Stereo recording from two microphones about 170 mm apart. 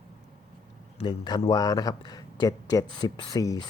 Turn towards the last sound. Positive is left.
turn(degrees=20)  # may be behind; listen again after turning